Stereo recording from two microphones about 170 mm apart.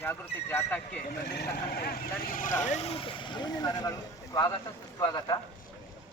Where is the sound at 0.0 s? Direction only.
10° left (ahead or behind).